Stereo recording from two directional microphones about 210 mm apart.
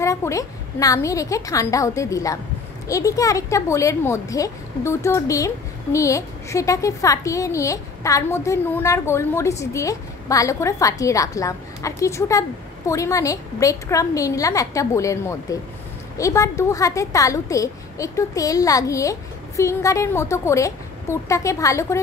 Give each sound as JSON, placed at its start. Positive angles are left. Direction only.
{"t": 0.0, "sound": "a woman's voice", "side_deg": 15}